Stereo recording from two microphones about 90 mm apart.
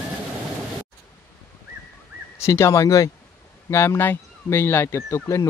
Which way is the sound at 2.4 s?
35° left (ahead or behind).